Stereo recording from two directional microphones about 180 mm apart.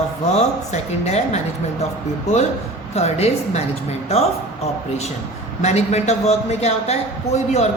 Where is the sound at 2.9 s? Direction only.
35° left (ahead or behind).